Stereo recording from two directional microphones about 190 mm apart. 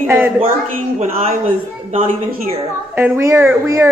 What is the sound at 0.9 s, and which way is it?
Speech, 40° right (ahead or behind).